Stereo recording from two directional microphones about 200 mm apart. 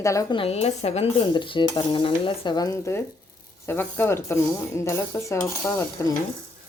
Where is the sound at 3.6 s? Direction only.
10° left (ahead or behind).